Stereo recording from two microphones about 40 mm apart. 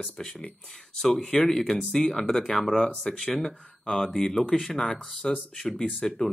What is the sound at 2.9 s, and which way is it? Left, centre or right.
Speech, left.